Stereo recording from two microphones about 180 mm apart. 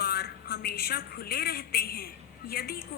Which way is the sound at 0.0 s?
60° left (ahead or behind).